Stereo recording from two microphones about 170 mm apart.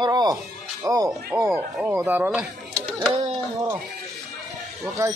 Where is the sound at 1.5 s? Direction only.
5° right (ahead or behind).